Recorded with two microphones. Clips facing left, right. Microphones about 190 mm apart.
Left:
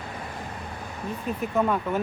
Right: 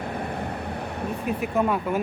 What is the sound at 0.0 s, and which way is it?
Vehicle, 60° right (ahead or behind).